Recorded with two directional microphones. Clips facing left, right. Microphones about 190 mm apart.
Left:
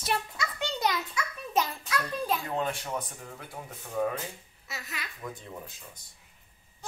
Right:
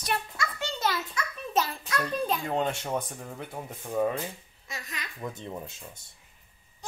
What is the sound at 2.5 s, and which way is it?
Speech, 25° right (ahead or behind).